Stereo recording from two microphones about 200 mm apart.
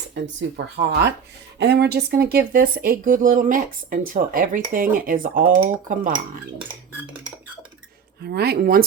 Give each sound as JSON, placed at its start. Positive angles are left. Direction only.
{"t": 0.1, "sound": "speech", "side_deg": -55}
{"t": 6.9, "sound": "a sound", "side_deg": -10}
{"t": 8.2, "sound": "speech", "side_deg": -50}